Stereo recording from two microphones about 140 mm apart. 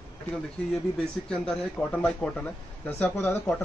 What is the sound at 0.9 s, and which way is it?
Speech, 5° left (ahead or behind).